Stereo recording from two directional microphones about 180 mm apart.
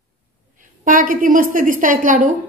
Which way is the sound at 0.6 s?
50° right (ahead or behind).